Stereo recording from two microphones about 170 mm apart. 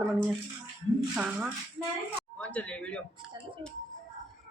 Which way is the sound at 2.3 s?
10° left (ahead or behind).